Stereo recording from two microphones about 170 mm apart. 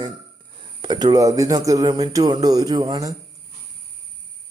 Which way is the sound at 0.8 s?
25° right (ahead or behind).